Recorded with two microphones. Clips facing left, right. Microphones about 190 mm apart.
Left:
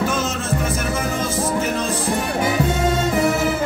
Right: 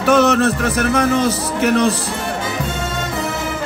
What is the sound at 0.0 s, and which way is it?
Speech, 70° right (ahead or behind).